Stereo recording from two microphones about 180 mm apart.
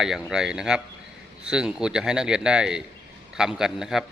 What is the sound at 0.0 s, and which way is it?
Speech, 5° right (ahead or behind).